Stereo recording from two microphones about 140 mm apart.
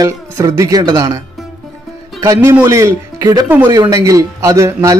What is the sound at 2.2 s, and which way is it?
Speech, 20° right (ahead or behind).